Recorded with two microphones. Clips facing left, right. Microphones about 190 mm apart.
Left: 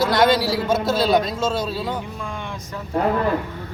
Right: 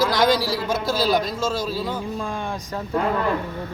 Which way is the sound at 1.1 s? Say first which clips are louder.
Left 3 dB; 25° left (ahead or behind).